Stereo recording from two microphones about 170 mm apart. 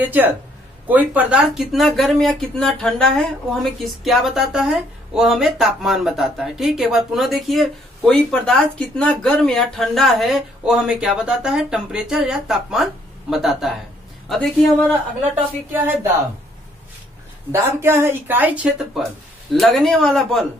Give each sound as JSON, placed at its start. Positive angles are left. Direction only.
{"t": 0.0, "sound": "speech", "side_deg": -10}
{"t": 15.7, "sound": "speech", "side_deg": -10}
{"t": 17.5, "sound": "speech", "side_deg": -15}